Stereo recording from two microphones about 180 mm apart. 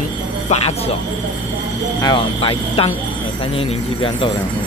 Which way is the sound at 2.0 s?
25° left (ahead or behind).